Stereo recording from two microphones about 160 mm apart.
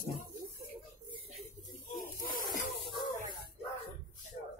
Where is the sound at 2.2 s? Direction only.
60° left (ahead or behind).